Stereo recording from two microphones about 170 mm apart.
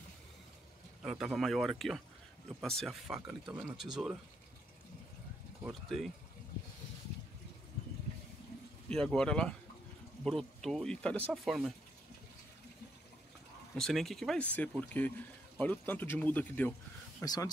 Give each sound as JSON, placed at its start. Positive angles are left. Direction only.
{"t": 1.0, "sound": "speech", "side_deg": -5}
{"t": 5.6, "sound": "speech", "side_deg": 0}
{"t": 8.8, "sound": "speech", "side_deg": 5}
{"t": 13.7, "sound": "speech", "side_deg": 0}
{"t": 17.2, "sound": "speech", "side_deg": 20}